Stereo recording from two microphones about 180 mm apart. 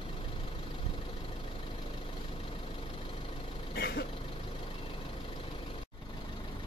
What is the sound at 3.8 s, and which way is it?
Vehicle, 65° left (ahead or behind).